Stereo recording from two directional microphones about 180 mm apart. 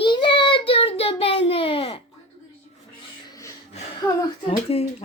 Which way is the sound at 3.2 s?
20° left (ahead or behind).